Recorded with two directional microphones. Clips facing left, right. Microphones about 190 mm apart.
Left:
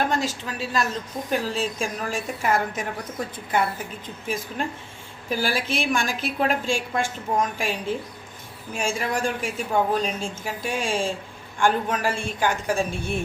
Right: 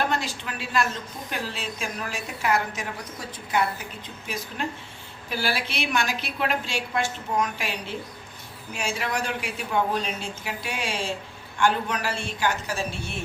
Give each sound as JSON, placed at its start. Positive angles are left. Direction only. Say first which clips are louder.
{"t": 0.1, "sound": "a woman's voice", "louder": "left 3 dB", "side_deg": 45}
{"t": 5.3, "sound": "a woman's voice", "louder": "left 4 dB", "side_deg": 45}